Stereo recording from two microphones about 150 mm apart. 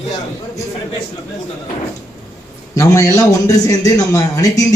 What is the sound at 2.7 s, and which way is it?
A man's voice, 20° left (ahead or behind).